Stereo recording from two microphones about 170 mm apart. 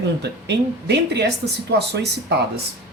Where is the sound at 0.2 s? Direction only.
80° right.